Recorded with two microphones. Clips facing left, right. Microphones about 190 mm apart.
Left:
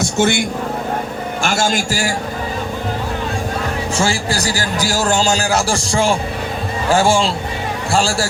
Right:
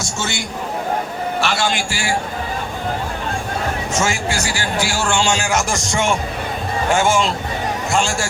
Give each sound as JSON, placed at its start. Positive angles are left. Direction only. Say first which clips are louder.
{"t": 0.0, "sound": "vehicle", "louder": "left 9 dB", "side_deg": 55}
{"t": 1.4, "sound": "a man's voice", "louder": "left 3 dB", "side_deg": 45}
{"t": 3.9, "sound": "a man's voice", "louder": "left 2 dB", "side_deg": 35}